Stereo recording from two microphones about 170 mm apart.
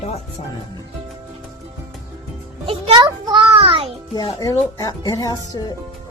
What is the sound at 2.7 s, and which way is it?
Music, 30° right (ahead or behind).